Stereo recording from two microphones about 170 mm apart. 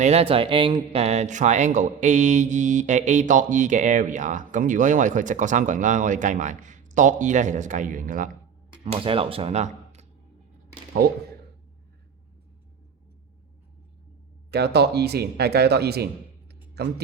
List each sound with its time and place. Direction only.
0.0 s speech: 35° right (ahead or behind); by 8.3 s 55° right (ahead or behind)
8.8 s speech: 30° right (ahead or behind)
14.5 s speech: 75° right (ahead or behind)